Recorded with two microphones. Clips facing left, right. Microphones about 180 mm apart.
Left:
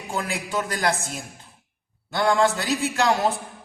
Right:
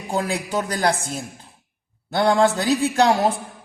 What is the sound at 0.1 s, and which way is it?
Speech, 40° right (ahead or behind).